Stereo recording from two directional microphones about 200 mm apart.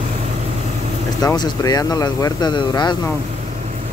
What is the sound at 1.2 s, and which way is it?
Speech, 15° left (ahead or behind).